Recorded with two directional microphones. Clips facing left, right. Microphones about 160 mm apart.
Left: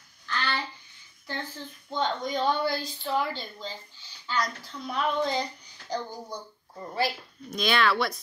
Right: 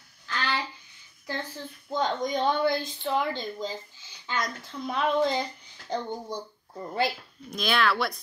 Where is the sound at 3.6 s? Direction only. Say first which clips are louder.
Right 5 dB; 45° right (ahead or behind).